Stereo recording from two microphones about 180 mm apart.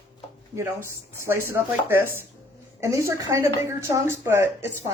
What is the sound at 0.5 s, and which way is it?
A woman's voice, 15° right (ahead or behind).